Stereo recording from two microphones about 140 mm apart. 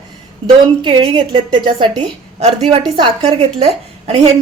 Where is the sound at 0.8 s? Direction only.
35° right (ahead or behind).